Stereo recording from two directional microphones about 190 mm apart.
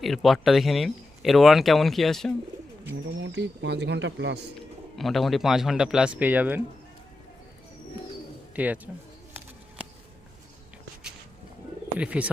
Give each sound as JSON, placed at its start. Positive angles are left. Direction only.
{"t": 0.0, "sound": "speech", "side_deg": 0}
{"t": 3.2, "sound": "speech", "side_deg": -75}
{"t": 4.9, "sound": "speech", "side_deg": 0}
{"t": 8.5, "sound": "speech", "side_deg": -10}
{"t": 11.9, "sound": "speech", "side_deg": -5}